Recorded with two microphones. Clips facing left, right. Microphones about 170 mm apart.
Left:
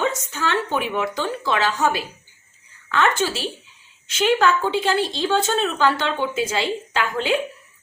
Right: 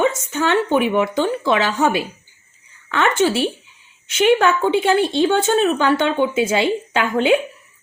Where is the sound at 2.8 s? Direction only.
60° right (ahead or behind).